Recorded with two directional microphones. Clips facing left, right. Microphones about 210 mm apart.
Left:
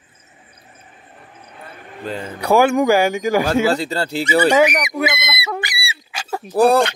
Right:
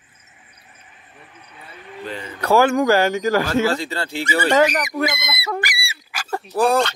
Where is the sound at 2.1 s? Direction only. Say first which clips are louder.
Left 6 dB; 45° left (ahead or behind).